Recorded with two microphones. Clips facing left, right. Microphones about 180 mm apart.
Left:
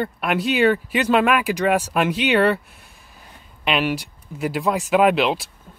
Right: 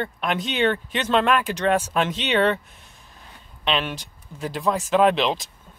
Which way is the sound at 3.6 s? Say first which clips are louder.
Left 4 dB; 10° left (ahead or behind).